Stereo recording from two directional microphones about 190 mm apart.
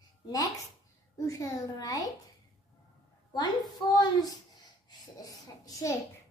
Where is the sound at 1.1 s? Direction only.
15° left (ahead or behind).